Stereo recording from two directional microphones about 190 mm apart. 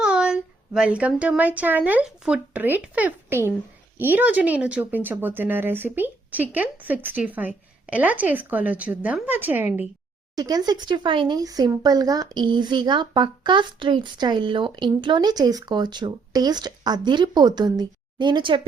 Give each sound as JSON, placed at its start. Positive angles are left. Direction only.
{"t": 0.0, "sound": "speech", "side_deg": -5}
{"t": 10.3, "sound": "speech", "side_deg": -20}